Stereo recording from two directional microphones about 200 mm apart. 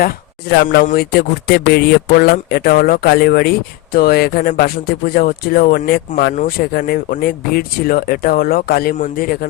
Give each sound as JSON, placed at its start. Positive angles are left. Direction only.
{"t": 0.0, "sound": "speech", "side_deg": 55}